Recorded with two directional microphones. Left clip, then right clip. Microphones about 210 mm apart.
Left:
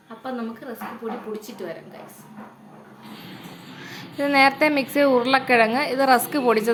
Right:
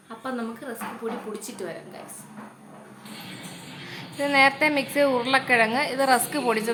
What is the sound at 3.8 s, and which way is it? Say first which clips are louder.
A woman's voice: left 2 dB; 20° left (ahead or behind).